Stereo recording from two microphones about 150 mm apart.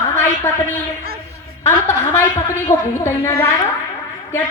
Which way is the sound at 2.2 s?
15° left (ahead or behind).